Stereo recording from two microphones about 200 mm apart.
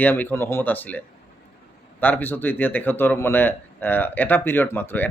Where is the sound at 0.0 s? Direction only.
10° left (ahead or behind).